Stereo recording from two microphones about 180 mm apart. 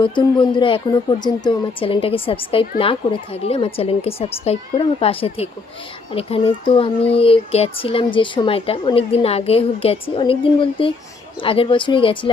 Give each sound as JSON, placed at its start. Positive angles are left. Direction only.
{"t": 0.0, "sound": "speech", "side_deg": 25}